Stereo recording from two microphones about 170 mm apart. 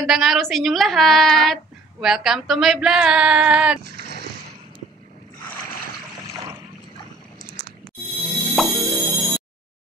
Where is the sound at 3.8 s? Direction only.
75° right (ahead or behind).